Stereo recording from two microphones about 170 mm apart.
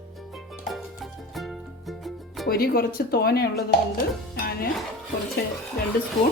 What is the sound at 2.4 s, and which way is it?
Speech, 65° left (ahead or behind).